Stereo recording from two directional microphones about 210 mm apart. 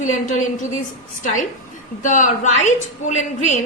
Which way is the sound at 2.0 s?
35° left (ahead or behind).